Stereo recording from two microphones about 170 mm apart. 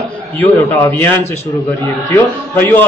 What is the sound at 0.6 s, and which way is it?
Speech, 10° left (ahead or behind).